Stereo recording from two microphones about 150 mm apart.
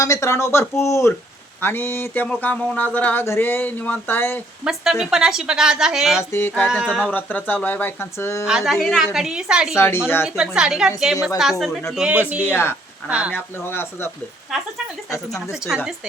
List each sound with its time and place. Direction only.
0.0 s speech: 20° left (ahead or behind)
4.6 s a woman's voice: centre (ahead or behind)
6.1 s speech: 15° left (ahead or behind)
6.7 s a woman's voice: 5° right (ahead or behind)
7.1 s speech: 10° left (ahead or behind)
8.4 s a woman's voice: 5° right (ahead or behind)
9.7 s speech: 15° left (ahead or behind)
10.2 s a woman's voice: 5° right (ahead or behind)
12.4 s speech: 15° left (ahead or behind)
13.1 s speech: 10° right (ahead or behind)
13.3 s speech: 15° left (ahead or behind)
15.3 s a woman's voice: 5° right (ahead or behind)